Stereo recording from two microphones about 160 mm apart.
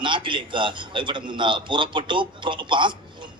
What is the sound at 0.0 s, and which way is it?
A man's voice, 30° right (ahead or behind).